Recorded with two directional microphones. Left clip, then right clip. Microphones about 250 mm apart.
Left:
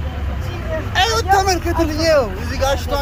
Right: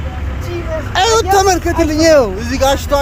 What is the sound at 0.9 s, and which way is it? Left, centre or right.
Speech, right.